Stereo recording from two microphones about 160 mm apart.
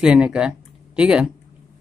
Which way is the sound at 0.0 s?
5° right (ahead or behind).